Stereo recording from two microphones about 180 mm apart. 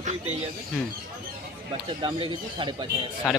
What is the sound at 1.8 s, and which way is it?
Speech, 30° right (ahead or behind).